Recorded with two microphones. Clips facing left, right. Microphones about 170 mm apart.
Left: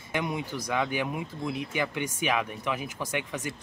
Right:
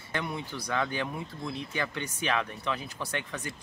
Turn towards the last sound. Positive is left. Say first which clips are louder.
# left 3 dB
turn(degrees=15)  # may be behind; listen again after turning